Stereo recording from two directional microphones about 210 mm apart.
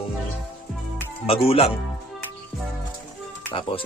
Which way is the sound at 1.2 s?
30° left (ahead or behind).